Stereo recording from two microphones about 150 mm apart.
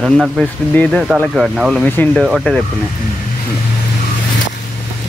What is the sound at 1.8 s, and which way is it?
Speech, 10° left (ahead or behind).